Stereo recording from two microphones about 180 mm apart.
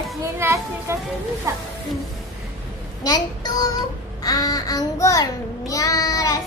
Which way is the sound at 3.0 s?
20° left (ahead or behind).